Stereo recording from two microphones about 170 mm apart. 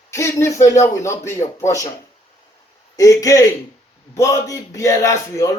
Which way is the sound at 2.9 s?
20° left (ahead or behind).